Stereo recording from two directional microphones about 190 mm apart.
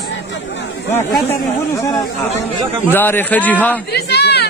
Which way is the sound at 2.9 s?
10° left (ahead or behind).